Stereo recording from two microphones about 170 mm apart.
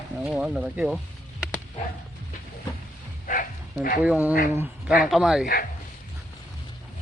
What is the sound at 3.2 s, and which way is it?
Bow-wow, 50° left (ahead or behind).